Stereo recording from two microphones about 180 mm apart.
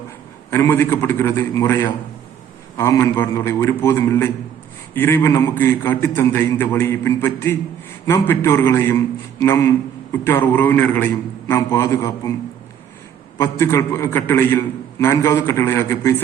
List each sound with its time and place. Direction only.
0.5 s a man's voice: 15° left (ahead or behind)
13.4 s a man's voice: 15° left (ahead or behind)